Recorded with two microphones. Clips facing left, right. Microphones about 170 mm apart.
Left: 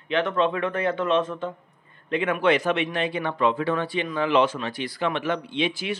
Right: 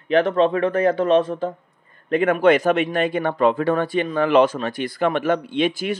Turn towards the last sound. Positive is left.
turn(degrees=-50)  # may be behind; listen again after turning